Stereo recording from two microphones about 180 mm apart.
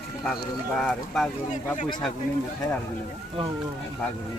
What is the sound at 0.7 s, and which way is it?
Speech, centre (ahead or behind).